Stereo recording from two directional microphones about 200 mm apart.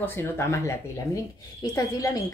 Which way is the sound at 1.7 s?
15° left (ahead or behind).